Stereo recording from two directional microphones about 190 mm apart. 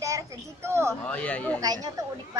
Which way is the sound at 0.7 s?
15° right (ahead or behind).